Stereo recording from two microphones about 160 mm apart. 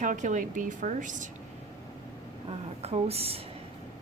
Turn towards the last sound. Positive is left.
turn(degrees=-40)  # may be behind; listen again after turning